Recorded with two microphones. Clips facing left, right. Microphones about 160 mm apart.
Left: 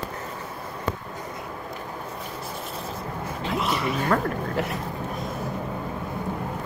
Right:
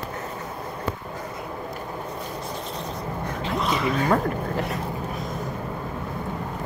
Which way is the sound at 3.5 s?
5° left (ahead or behind).